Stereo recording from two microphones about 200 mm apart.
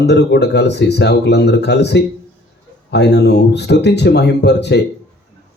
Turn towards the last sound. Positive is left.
turn(degrees=60)  # may be behind; listen again after turning